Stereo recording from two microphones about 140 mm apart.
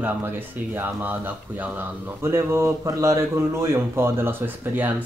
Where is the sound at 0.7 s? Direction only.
10° right (ahead or behind).